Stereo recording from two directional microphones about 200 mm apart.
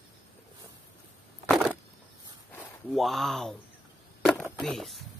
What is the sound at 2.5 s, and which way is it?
Speech, 5° left (ahead or behind).